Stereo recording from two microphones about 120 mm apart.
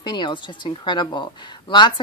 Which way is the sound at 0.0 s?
40° left (ahead or behind).